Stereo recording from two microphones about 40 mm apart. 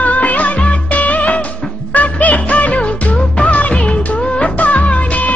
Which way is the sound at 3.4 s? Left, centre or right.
Left.